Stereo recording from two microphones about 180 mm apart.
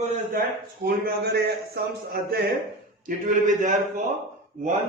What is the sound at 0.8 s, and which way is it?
Speech, 60° right (ahead or behind).